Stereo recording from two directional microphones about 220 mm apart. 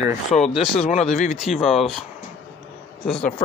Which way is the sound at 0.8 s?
30° left (ahead or behind).